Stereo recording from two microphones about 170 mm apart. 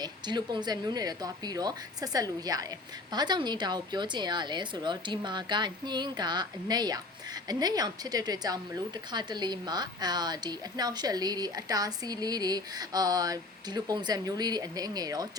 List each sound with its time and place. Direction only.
0.0 s a woman's voice: 25° right (ahead or behind)